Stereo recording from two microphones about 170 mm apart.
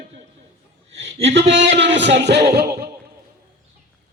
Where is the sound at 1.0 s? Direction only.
40° right (ahead or behind).